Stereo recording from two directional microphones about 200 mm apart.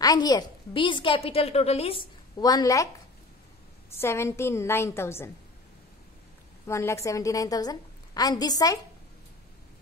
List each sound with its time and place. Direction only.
0.0 s a woman's voice: 20° left (ahead or behind)
3.9 s a woman's voice: 10° left (ahead or behind)
6.7 s a woman's voice: 15° left (ahead or behind)